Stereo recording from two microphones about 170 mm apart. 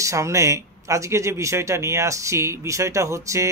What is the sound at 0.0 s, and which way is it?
A man's voice, 15° right (ahead or behind).